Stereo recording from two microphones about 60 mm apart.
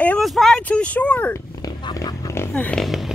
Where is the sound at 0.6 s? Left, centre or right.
Left.